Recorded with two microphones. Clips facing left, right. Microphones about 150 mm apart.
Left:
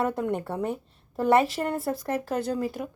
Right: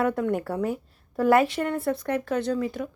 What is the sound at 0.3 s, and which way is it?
Speech, 25° left (ahead or behind).